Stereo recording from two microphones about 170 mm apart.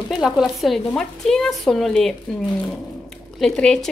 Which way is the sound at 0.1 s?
Centre (ahead or behind).